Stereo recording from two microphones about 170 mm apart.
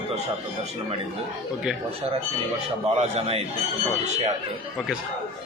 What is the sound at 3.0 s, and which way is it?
Speech, 40° right (ahead or behind).